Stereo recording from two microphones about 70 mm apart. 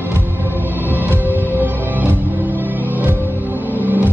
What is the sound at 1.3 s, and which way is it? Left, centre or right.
Music, right.